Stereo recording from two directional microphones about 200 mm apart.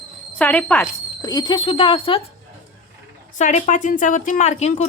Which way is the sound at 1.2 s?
20° left (ahead or behind).